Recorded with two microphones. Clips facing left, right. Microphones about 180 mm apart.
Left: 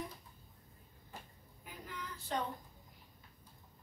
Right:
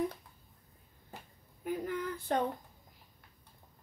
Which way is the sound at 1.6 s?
55° right (ahead or behind).